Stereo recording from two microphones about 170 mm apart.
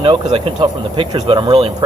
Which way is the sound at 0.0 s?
30° right (ahead or behind).